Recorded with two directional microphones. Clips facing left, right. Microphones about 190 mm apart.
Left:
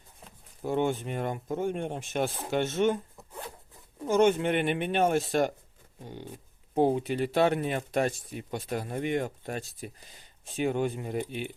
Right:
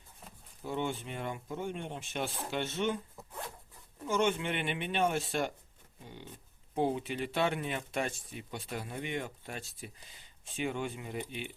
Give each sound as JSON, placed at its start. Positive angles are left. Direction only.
{"t": 0.6, "sound": "speech", "side_deg": 50}
{"t": 4.0, "sound": "speech", "side_deg": 40}
{"t": 6.0, "sound": "a sound", "side_deg": 40}
{"t": 6.7, "sound": "speech", "side_deg": 40}